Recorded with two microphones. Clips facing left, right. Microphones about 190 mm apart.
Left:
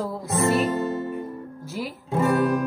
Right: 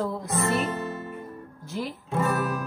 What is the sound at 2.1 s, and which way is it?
Music, 25° left (ahead or behind).